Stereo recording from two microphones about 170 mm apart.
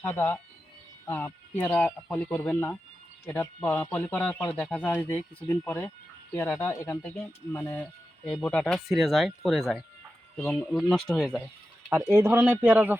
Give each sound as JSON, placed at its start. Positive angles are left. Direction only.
{"t": 0.0, "sound": "speech", "side_deg": 10}
{"t": 11.9, "sound": "speech", "side_deg": -15}